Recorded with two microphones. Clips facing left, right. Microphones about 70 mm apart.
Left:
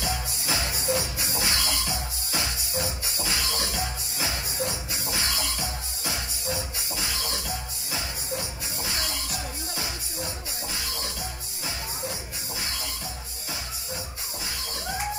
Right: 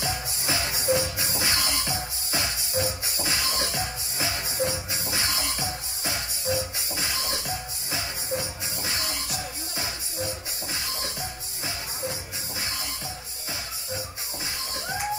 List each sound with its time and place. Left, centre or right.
0.0 s music: right